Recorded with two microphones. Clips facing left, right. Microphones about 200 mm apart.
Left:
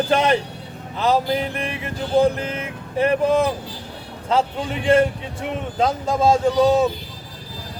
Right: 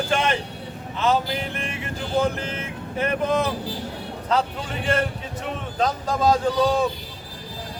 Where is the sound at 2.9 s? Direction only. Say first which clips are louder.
Left 5 dB; 30° left (ahead or behind).